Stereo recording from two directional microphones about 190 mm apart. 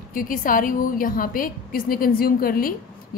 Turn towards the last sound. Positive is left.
turn(degrees=50)  # may be behind; listen again after turning